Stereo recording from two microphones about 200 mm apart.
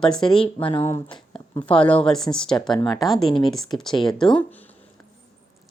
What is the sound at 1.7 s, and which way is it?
Speech, 5° left (ahead or behind).